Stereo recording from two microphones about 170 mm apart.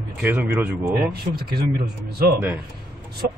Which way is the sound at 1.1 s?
65° right (ahead or behind).